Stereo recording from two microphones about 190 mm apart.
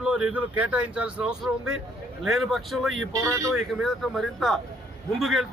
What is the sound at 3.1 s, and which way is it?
Speech, 15° right (ahead or behind).